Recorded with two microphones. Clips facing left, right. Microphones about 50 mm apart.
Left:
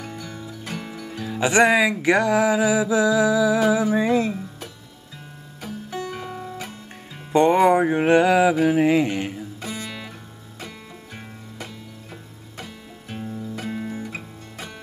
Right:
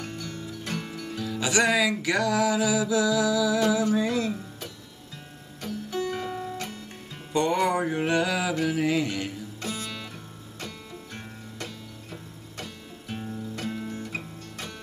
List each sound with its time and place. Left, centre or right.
0.0 s music: centre
1.2 s music: left
5.6 s music: centre
7.3 s music: left
8.6 s mantra: left
9.6 s guitar: centre
11.1 s music: centre